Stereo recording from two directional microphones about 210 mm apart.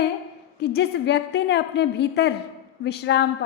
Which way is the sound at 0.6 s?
50° left (ahead or behind).